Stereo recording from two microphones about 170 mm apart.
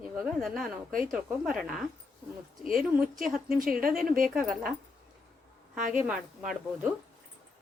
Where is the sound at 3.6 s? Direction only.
55° right (ahead or behind).